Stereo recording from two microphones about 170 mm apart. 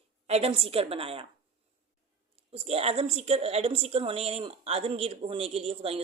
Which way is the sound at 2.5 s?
35° right (ahead or behind).